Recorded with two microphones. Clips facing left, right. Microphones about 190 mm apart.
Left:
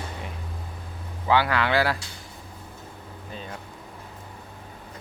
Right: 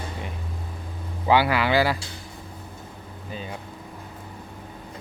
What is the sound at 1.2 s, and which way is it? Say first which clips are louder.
Speech: right 2 dB; 10° right (ahead or behind).